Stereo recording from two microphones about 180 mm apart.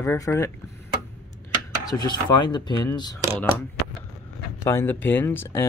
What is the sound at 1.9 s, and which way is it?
Speech, 20° left (ahead or behind).